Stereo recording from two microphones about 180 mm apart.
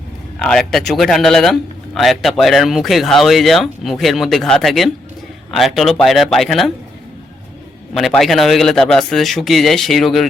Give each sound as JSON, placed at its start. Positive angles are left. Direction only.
{"t": 0.3, "sound": "speech", "side_deg": 0}
{"t": 7.9, "sound": "speech", "side_deg": 0}